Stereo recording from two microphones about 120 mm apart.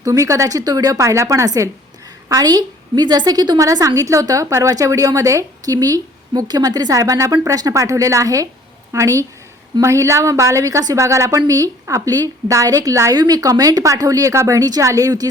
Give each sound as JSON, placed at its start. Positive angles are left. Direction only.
{"t": 0.0, "sound": "a woman's voice", "side_deg": -25}